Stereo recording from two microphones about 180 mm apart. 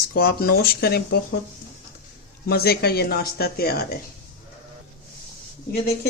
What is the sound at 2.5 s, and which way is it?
Speech, 60° left (ahead or behind).